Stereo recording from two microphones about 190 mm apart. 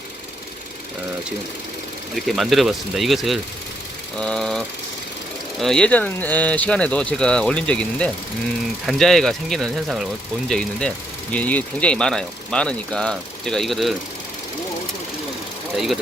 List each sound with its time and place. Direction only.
2.1 s speech: centre (ahead or behind)
15.7 s speech: centre (ahead or behind)